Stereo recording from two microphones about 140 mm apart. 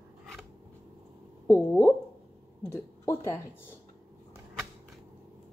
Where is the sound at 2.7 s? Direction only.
20° left (ahead or behind).